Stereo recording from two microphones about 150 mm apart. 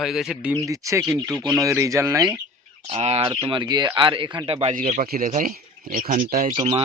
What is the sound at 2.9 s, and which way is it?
Speech, 45° right (ahead or behind).